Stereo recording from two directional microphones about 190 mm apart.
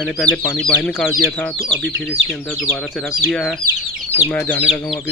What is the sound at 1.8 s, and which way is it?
Speech, 60° right (ahead or behind).